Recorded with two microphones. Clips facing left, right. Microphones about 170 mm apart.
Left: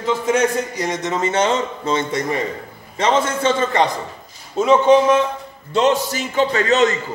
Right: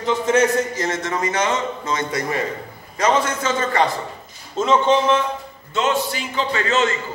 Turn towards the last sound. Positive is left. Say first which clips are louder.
# left 4 dB
turn(degrees=40)  # may be behind; listen again after turning